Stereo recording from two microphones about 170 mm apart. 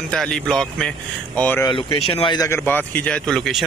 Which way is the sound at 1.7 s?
30° left (ahead or behind).